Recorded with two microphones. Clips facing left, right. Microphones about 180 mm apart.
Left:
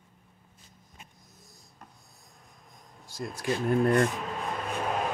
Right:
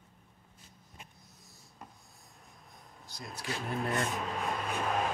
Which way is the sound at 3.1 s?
50° left (ahead or behind).